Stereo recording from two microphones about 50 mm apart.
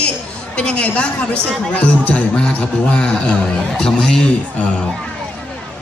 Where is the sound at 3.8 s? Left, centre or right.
Centre.